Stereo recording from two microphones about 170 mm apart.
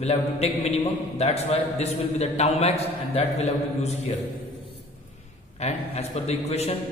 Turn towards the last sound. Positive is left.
turn(degrees=40)  # may be behind; listen again after turning